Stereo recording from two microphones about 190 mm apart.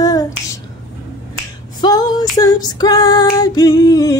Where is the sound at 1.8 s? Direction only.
20° left (ahead or behind).